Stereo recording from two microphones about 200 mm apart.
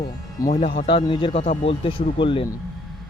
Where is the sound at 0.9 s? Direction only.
25° left (ahead or behind).